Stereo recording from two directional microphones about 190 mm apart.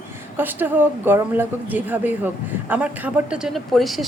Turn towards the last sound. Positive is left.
turn(degrees=0)  # may be behind; listen again after turning